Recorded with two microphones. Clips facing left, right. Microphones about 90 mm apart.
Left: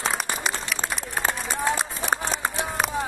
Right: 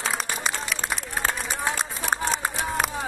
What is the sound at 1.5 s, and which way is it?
Run, centre (ahead or behind).